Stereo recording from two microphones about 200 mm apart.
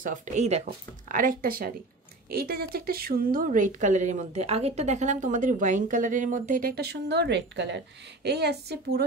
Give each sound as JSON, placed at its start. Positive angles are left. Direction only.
{"t": 0.0, "sound": "a woman's voice", "side_deg": -40}